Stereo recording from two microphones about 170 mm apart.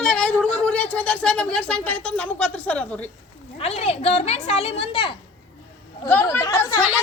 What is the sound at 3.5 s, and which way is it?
A woman's voice, 35° left (ahead or behind).